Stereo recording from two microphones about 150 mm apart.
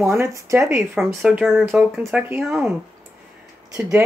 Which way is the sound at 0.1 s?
20° right (ahead or behind).